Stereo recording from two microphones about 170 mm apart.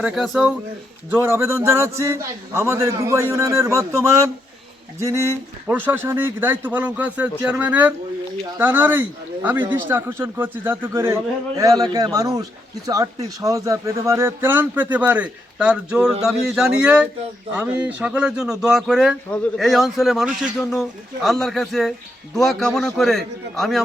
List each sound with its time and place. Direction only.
0.0 s a man's voice: 5° right (ahead or behind)